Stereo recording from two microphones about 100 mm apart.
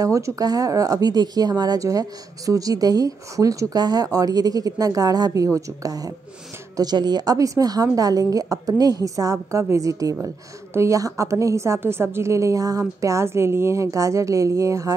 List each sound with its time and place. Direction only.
0.0 s speech: 35° right (ahead or behind)